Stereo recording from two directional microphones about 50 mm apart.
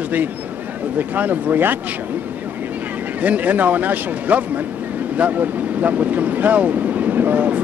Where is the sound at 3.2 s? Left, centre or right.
Right.